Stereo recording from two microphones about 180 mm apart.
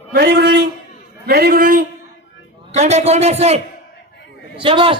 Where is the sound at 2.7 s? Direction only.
40° right (ahead or behind).